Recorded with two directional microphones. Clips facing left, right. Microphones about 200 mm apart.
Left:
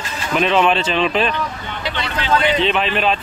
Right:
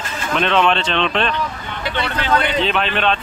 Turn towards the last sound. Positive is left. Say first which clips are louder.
# left 1 dB
turn(degrees=0)  # may be behind; listen again after turning